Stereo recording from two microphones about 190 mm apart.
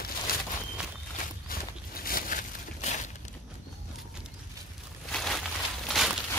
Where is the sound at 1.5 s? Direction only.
50° left (ahead or behind).